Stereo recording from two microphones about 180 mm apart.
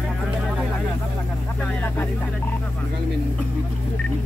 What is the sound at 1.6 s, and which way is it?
Vehicle, 10° left (ahead or behind).